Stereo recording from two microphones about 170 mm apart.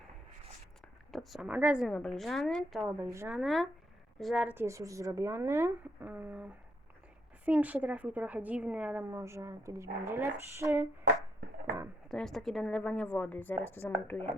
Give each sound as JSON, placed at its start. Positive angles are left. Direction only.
{"t": 1.1, "sound": "a woman's voice", "side_deg": 0}
{"t": 1.9, "sound": "a woman's voice", "side_deg": 5}
{"t": 3.0, "sound": "a woman's voice", "side_deg": -15}
{"t": 3.3, "sound": "a woman's voice", "side_deg": 0}
{"t": 12.0, "sound": "a woman's voice", "side_deg": 0}